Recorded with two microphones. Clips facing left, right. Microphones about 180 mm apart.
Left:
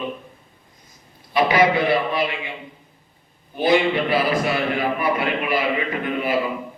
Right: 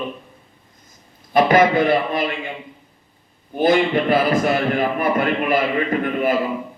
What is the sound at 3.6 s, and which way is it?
A man's voice, 50° right (ahead or behind).